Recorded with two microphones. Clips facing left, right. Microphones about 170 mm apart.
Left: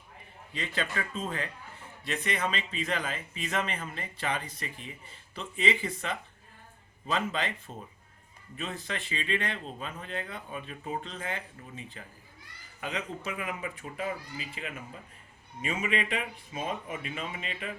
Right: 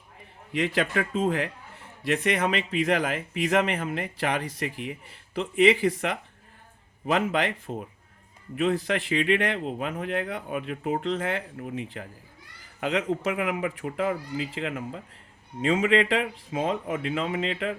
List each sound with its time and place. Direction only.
0.5 s speech: 90° right
12.8 s speech: 85° right